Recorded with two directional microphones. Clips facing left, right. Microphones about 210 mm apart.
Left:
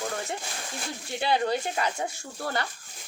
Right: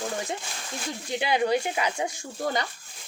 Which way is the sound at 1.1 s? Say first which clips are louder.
Right 2 dB; 15° right (ahead or behind).